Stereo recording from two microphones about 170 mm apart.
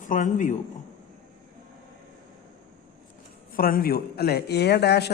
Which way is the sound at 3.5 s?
55° left (ahead or behind).